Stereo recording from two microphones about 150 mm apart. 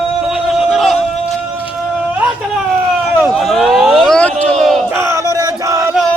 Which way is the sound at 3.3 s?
Centre (ahead or behind).